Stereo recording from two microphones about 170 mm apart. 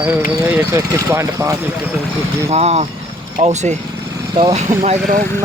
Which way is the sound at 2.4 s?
40° right (ahead or behind).